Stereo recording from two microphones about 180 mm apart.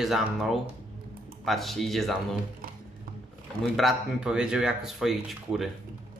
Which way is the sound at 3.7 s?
Centre (ahead or behind).